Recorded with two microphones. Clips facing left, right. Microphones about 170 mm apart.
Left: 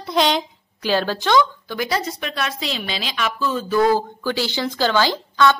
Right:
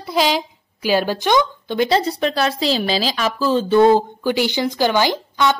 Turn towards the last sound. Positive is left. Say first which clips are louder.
# left 1 dB
turn(degrees=-15)  # may be behind; listen again after turning